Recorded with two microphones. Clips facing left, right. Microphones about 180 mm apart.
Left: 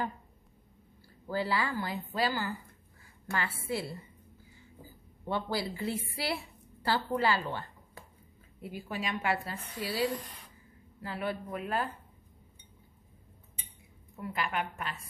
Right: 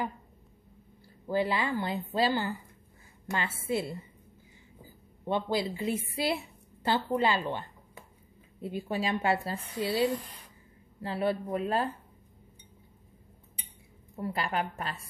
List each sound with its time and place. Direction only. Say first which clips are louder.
1.2 s a woman's voice: right 3 dB; 20° right (ahead or behind)
5.2 s a woman's voice: right 4 dB; 20° right (ahead or behind)
14.1 s a woman's voice: right 3 dB; 35° right (ahead or behind)